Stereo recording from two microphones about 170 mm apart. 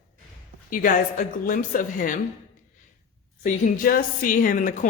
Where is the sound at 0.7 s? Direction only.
50° left (ahead or behind).